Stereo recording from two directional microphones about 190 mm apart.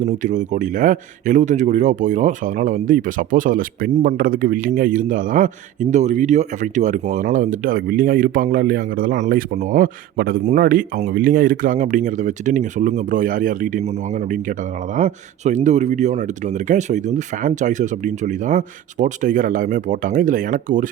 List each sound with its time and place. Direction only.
0.0 s speech: 40° right (ahead or behind)